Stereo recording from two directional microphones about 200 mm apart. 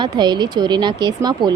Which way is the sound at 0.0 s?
20° right (ahead or behind).